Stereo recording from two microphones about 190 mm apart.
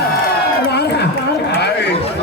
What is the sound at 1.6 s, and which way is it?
Chatter, 60° left (ahead or behind).